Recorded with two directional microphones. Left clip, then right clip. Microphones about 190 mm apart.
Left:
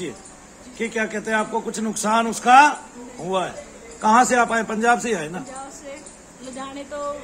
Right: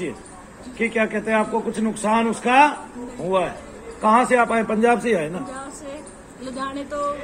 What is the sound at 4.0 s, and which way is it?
A man's voice, 30° left (ahead or behind).